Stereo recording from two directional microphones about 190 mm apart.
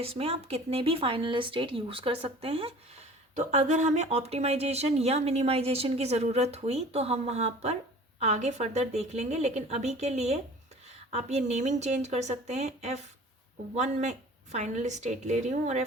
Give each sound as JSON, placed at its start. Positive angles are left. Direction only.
{"t": 0.0, "sound": "a woman's voice", "side_deg": -30}